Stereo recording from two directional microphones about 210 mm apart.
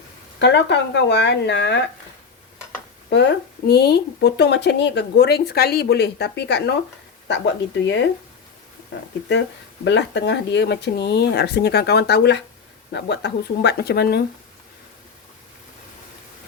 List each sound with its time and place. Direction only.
0.3 s speech: 55° left (ahead or behind)
3.1 s speech: 55° left (ahead or behind)
9.8 s speech: 55° left (ahead or behind)